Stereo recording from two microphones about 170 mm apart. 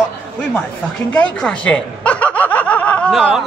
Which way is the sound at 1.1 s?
5° left (ahead or behind).